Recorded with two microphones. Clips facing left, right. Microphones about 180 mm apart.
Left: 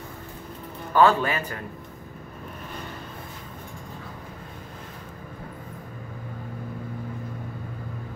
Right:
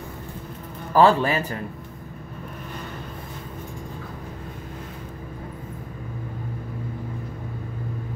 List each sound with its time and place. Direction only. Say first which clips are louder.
0.9 s a man's voice: right 2 dB; 30° right (ahead or behind)